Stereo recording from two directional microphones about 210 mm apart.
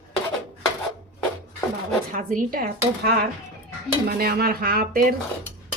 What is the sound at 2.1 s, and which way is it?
A woman's voice, 40° right (ahead or behind).